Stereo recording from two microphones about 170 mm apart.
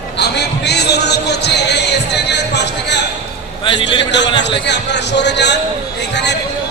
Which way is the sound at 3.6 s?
30° left (ahead or behind).